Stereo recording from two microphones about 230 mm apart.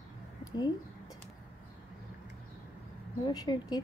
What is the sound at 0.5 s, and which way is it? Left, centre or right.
Speech, centre.